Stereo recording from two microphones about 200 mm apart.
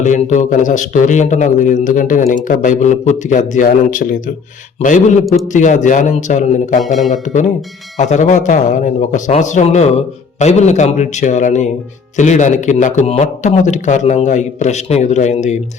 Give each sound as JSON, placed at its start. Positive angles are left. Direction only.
{"t": 0.0, "sound": "a man's voice", "side_deg": 35}
{"t": 5.5, "sound": "a man's voice", "side_deg": 40}